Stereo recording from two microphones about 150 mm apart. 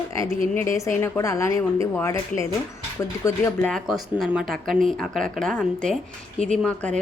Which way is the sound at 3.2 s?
20° left (ahead or behind).